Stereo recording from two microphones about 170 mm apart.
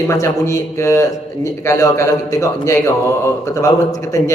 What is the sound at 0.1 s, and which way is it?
A man's voice, 15° left (ahead or behind).